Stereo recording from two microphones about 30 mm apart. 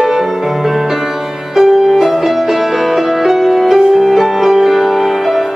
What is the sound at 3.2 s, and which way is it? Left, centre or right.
Music, centre.